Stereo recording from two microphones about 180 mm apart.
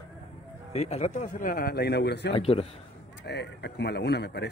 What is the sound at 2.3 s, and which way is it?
Speech, 35° left (ahead or behind).